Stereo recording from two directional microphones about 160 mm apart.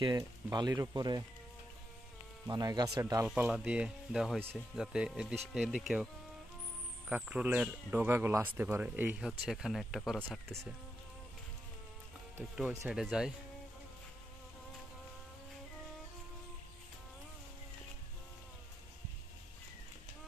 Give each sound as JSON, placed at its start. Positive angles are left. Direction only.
{"t": 0.0, "sound": "speech", "side_deg": -25}
{"t": 2.4, "sound": "speech", "side_deg": -25}
{"t": 3.3, "sound": "speech", "side_deg": -5}
{"t": 7.1, "sound": "speech", "side_deg": -5}
{"t": 12.5, "sound": "speech", "side_deg": -5}